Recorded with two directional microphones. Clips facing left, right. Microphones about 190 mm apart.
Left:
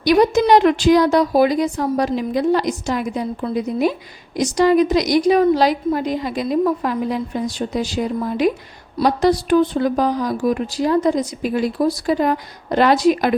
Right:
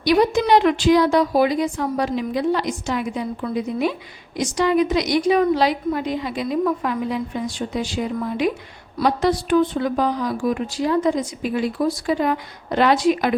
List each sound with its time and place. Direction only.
0.0 s speech: 45° left (ahead or behind)